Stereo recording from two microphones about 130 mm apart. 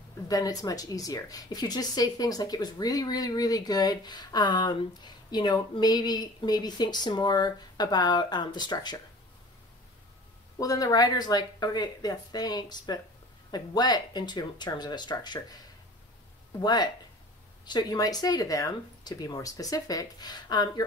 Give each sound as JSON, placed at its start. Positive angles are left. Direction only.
{"t": 0.3, "sound": "speech", "side_deg": 30}
{"t": 10.6, "sound": "speech", "side_deg": 30}
{"t": 16.6, "sound": "speech", "side_deg": 30}